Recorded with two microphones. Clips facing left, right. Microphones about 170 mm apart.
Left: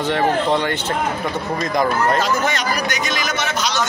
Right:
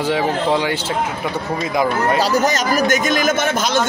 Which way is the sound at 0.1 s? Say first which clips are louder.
Left 1 dB; 10° right (ahead or behind).